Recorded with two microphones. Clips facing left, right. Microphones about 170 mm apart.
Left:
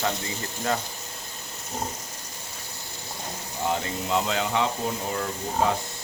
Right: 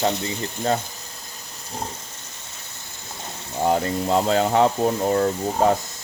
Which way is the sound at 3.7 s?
40° right (ahead or behind).